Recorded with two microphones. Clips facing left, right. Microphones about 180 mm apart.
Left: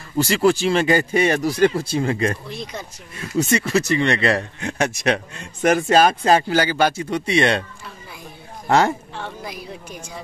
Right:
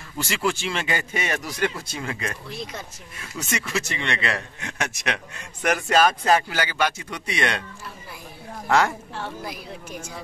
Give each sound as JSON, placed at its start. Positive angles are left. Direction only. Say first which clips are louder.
{"t": 0.2, "sound": "speech", "louder": "left 9 dB", "side_deg": 40}
{"t": 8.6, "sound": "a woman's voice", "louder": "left 4 dB", "side_deg": 30}
{"t": 9.1, "sound": "a woman's voice", "louder": "left 1 dB", "side_deg": 0}